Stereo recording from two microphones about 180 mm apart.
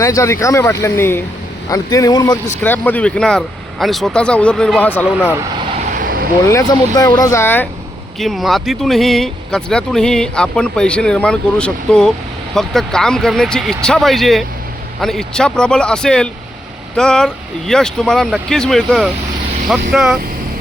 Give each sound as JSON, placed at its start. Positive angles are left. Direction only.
{"t": 0.0, "sound": "speech", "side_deg": 15}
{"t": 5.9, "sound": "vehicle", "side_deg": -50}
{"t": 6.5, "sound": "speech", "side_deg": 20}
{"t": 8.2, "sound": "speech", "side_deg": 0}